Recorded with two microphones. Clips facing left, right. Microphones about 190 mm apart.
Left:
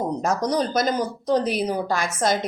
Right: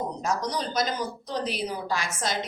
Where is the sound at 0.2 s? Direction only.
50° left (ahead or behind).